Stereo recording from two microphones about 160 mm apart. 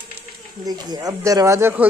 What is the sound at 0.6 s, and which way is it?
Speech, 25° right (ahead or behind).